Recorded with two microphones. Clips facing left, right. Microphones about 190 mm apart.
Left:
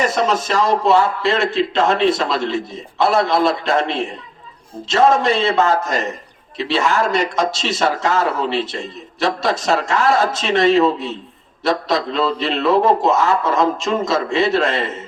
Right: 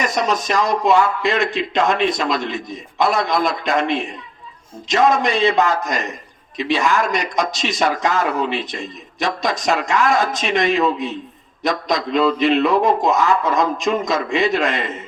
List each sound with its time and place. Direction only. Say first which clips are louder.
0.0 s a man's voice: left 2 dB; 15° right (ahead or behind)